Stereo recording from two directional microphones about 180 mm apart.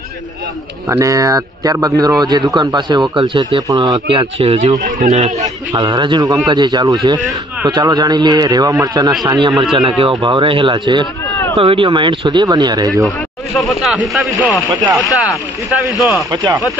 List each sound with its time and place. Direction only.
0.8 s speech: 15° right (ahead or behind); by 5.5 s 35° right (ahead or behind)
5.7 s speech: 25° right (ahead or behind)
13.6 s speech: centre (ahead or behind)
16.3 s speech: 25° right (ahead or behind)